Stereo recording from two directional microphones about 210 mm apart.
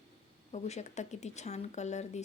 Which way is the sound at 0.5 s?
35° left (ahead or behind).